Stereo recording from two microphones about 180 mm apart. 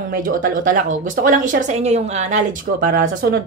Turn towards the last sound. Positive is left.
turn(degrees=-55)  # may be behind; listen again after turning